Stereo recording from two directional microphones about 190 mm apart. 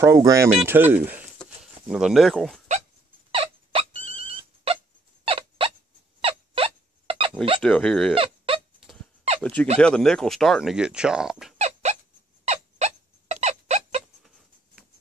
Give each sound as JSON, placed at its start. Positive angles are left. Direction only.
{"t": 0.0, "sound": "speech", "side_deg": -15}
{"t": 1.4, "sound": "a sound", "side_deg": -5}
{"t": 3.3, "sound": "a sound", "side_deg": -30}
{"t": 5.2, "sound": "fowl", "side_deg": -30}
{"t": 6.2, "sound": "turkey", "side_deg": -30}
{"t": 7.6, "sound": "speech", "side_deg": 5}
{"t": 8.1, "sound": "dog", "side_deg": -30}
{"t": 9.4, "sound": "speech", "side_deg": 5}
{"t": 11.5, "sound": "cat", "side_deg": -35}
{"t": 12.4, "sound": "a sound", "side_deg": -35}